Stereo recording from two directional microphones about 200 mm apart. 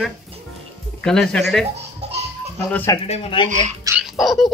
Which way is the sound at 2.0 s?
30° right (ahead or behind).